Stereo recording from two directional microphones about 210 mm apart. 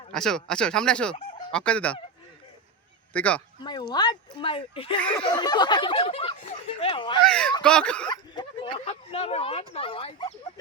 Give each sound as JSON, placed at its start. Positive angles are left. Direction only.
{"t": 0.1, "sound": "speech", "side_deg": 5}
{"t": 3.1, "sound": "speech", "side_deg": 5}
{"t": 3.6, "sound": "speech", "side_deg": 20}
{"t": 4.9, "sound": "speech", "side_deg": 5}
{"t": 5.2, "sound": "speech", "side_deg": 20}
{"t": 7.3, "sound": "speech", "side_deg": 5}
{"t": 8.0, "sound": "speech", "side_deg": 20}